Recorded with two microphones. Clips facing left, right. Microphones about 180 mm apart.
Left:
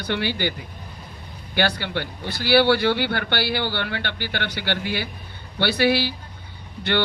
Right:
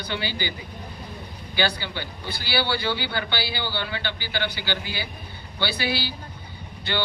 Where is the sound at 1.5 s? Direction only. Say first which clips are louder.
Left 3 dB; 60° left (ahead or behind).